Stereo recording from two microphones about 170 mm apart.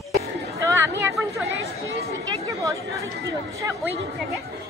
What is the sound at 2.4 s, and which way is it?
Speech, 20° right (ahead or behind).